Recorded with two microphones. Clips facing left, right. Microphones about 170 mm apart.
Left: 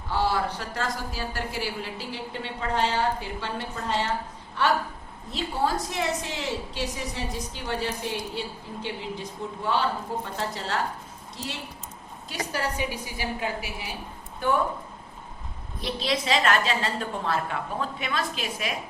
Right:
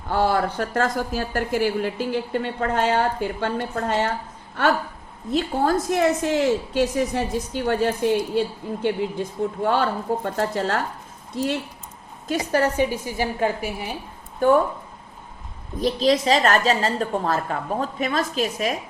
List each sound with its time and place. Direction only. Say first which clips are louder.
0.1 s speech: right 5 dB; 50° right (ahead or behind)
5.3 s speech: right 6 dB; 50° right (ahead or behind)
12.3 s speech: right 9 dB; 50° right (ahead or behind)
15.8 s a woman's voice: right 9 dB; 40° right (ahead or behind)